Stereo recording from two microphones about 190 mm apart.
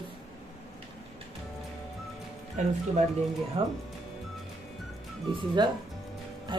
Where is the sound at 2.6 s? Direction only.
40° right (ahead or behind).